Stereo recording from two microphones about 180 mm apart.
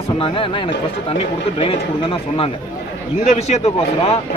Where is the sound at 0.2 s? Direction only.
30° left (ahead or behind).